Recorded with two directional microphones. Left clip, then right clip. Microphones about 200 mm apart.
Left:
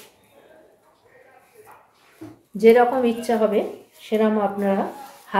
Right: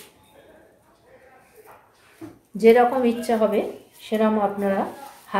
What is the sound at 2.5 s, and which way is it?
A woman's voice, 5° left (ahead or behind).